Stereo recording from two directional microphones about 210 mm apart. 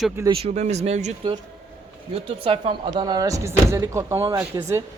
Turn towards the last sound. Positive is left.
turn(degrees=-15)  # may be behind; listen again after turning